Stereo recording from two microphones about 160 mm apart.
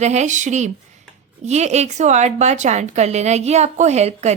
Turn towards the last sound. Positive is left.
turn(degrees=-45)  # may be behind; listen again after turning